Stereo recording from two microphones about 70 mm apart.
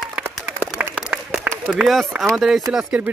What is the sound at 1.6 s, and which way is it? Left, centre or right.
Speech, centre.